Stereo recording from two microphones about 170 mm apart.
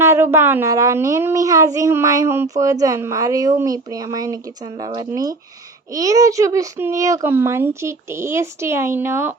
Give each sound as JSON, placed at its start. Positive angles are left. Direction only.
{"t": 0.0, "sound": "a woman's voice", "side_deg": -15}